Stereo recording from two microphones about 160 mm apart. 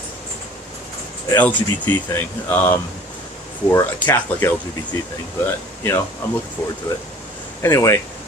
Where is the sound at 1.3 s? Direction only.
10° left (ahead or behind).